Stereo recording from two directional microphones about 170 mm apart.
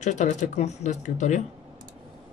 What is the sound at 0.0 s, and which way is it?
Speech, 45° left (ahead or behind).